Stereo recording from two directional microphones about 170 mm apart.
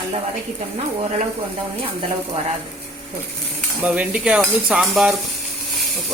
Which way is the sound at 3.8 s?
10° right (ahead or behind).